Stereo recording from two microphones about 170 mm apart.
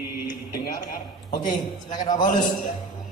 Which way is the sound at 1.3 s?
50° left (ahead or behind).